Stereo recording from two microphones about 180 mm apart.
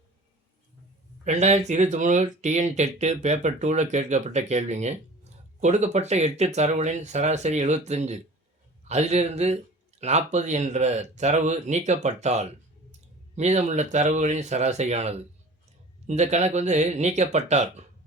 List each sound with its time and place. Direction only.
1.2 s speech: 40° right (ahead or behind)